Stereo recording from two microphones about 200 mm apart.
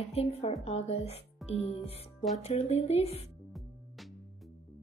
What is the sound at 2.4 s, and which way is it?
Speech, 30° left (ahead or behind).